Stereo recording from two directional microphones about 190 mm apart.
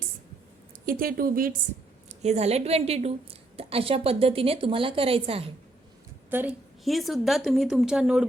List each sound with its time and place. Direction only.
0.9 s speech: 50° right (ahead or behind)
2.0 s a woman's voice: 35° right (ahead or behind)
6.3 s a woman's voice: 5° right (ahead or behind)